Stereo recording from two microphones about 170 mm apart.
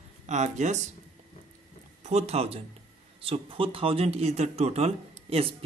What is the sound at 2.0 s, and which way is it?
Speech, 40° right (ahead or behind).